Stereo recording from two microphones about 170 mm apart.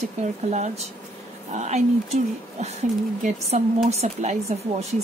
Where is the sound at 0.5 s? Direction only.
40° right (ahead or behind).